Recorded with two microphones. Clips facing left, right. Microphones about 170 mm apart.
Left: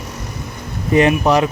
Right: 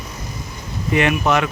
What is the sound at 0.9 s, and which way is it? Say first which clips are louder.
Speech: left 4 dB; 35° left (ahead or behind).